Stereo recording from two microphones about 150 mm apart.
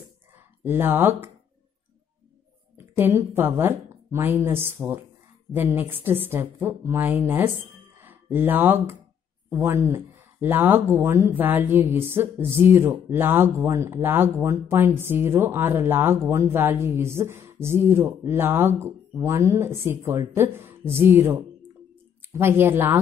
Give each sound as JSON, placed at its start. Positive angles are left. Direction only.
{"t": 0.7, "sound": "speech", "side_deg": -15}
{"t": 3.0, "sound": "speech", "side_deg": -15}